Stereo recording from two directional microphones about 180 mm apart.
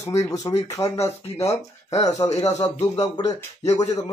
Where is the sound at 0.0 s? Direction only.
20° left (ahead or behind).